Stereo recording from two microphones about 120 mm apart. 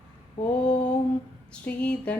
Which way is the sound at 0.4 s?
60° left (ahead or behind).